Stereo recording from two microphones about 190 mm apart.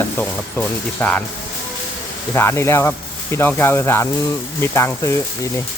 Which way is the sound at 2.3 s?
15° left (ahead or behind).